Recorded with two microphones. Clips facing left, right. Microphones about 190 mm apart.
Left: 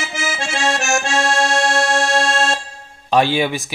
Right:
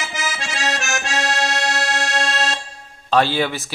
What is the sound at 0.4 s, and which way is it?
Accordion, 30° left (ahead or behind).